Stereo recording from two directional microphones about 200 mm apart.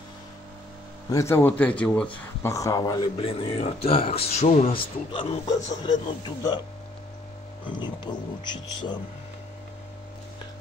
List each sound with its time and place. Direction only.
1.1 s speech: 10° left (ahead or behind)
3.2 s speech: 30° left (ahead or behind)
7.6 s speech: 20° left (ahead or behind)